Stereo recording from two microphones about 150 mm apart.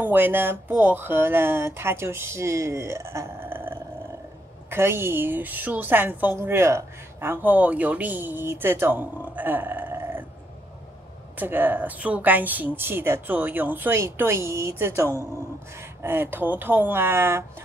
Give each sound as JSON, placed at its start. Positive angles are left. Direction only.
{"t": 0.0, "sound": "a woman's voice", "side_deg": -15}
{"t": 11.3, "sound": "a woman's voice", "side_deg": -10}